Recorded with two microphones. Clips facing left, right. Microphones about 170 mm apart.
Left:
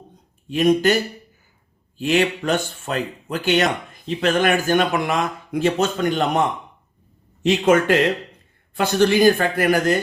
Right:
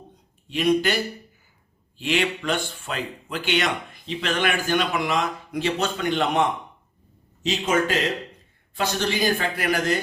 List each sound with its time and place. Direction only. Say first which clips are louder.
0.4 s speech: left 5 dB; 45° left (ahead or behind)
7.4 s speech: left 7 dB; 60° left (ahead or behind)